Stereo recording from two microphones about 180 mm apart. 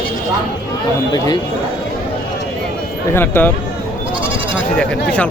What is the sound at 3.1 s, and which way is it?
Speech, 10° left (ahead or behind).